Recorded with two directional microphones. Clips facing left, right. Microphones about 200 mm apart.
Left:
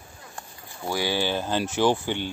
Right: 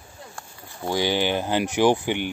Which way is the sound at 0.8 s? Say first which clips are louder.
Right 3 dB; 20° right (ahead or behind).